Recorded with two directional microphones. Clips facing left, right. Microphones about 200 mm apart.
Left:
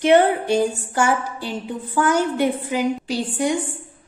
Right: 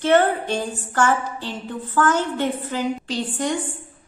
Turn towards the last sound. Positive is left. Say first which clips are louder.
# left 3 dB
turn(degrees=10)  # may be behind; listen again after turning